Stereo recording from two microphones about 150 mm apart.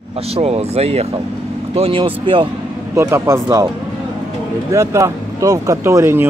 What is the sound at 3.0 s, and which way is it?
Speech, 20° right (ahead or behind).